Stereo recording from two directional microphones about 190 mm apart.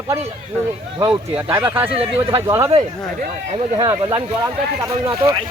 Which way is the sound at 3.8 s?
20° right (ahead or behind).